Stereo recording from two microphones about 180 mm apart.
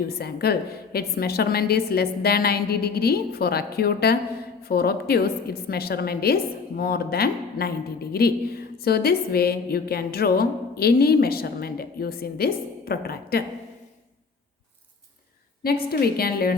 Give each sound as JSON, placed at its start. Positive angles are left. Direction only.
{"t": 0.1, "sound": "a woman's voice", "side_deg": 60}
{"t": 15.9, "sound": "a woman's voice", "side_deg": 60}